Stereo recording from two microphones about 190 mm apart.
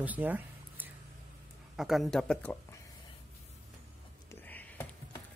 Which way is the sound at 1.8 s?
Centre (ahead or behind).